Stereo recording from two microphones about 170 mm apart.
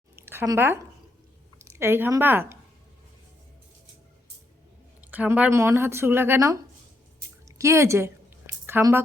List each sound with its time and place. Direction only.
0.3 s a woman's voice: 15° right (ahead or behind)
4.9 s speech: 10° right (ahead or behind)